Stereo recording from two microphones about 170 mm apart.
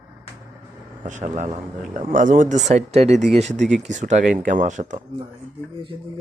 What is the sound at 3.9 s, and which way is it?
Speech, 45° right (ahead or behind).